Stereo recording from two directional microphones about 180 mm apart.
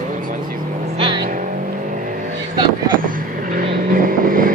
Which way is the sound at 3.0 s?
50° right (ahead or behind).